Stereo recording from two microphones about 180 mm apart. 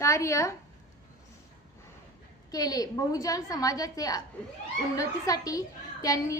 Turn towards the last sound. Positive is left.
turn(degrees=20)  # may be behind; listen again after turning